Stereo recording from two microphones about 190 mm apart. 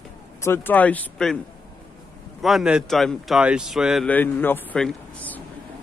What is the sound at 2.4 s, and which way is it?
Speech, 5° right (ahead or behind).